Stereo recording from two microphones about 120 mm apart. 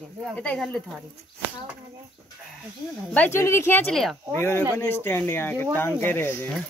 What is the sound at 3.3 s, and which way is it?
Speech, 20° left (ahead or behind).